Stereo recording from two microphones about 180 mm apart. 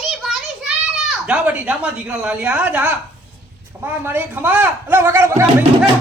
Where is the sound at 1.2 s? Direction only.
5° right (ahead or behind).